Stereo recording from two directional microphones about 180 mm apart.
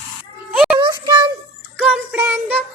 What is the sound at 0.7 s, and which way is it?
Speech, 25° right (ahead or behind).